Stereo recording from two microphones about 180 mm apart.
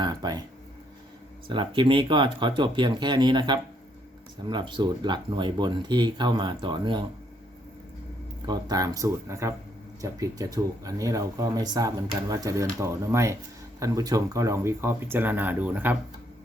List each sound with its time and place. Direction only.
0.0 s a sound: 25° right (ahead or behind)
1.5 s speech: 25° right (ahead or behind)
8.4 s speech: 20° right (ahead or behind)